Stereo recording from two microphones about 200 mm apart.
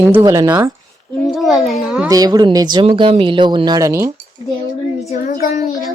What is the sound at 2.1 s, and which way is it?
Speech, 20° right (ahead or behind).